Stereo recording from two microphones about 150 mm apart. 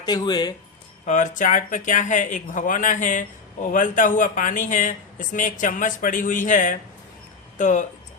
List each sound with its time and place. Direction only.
0.0 s speech: 25° left (ahead or behind)
1.0 s speech: 55° left (ahead or behind)